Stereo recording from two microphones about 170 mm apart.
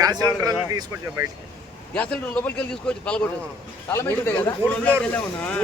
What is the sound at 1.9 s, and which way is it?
Speech, 10° left (ahead or behind).